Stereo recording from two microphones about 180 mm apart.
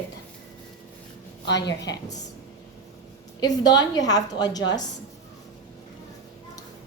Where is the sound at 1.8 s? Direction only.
20° left (ahead or behind).